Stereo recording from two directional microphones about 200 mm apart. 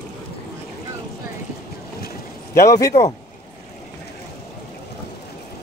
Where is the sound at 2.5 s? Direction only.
15° left (ahead or behind).